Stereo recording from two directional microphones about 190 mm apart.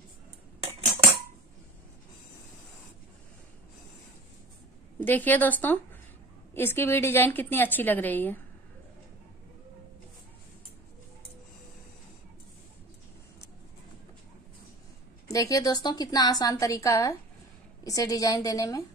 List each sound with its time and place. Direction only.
0.6 s cutlery: 30° right (ahead or behind)
5.0 s a woman's voice: 10° left (ahead or behind)
15.2 s a woman's voice: 15° left (ahead or behind)